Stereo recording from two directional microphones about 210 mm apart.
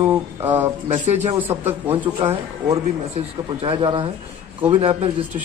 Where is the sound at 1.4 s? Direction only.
10° right (ahead or behind).